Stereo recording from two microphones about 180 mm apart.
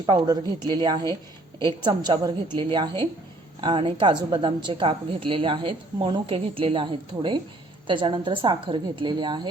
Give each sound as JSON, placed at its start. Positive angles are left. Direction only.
{"t": 0.0, "sound": "a woman's voice", "side_deg": -25}